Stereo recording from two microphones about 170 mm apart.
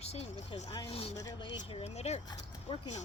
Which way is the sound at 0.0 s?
40° left (ahead or behind).